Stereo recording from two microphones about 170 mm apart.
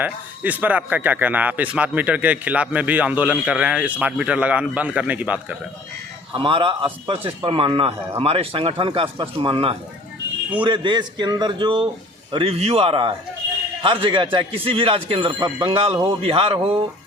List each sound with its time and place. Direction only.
0.0 s speech: 10° right (ahead or behind)
6.3 s a man's voice: 30° right (ahead or behind)